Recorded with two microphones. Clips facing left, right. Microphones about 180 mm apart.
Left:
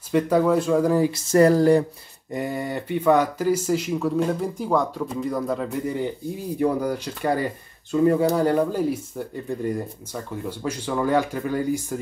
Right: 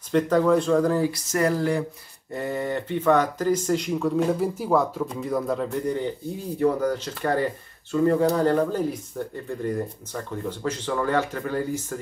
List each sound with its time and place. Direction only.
0.1 s speech: 10° left (ahead or behind)
1.3 s speech: 35° left (ahead or behind)
2.3 s speech: 15° left (ahead or behind)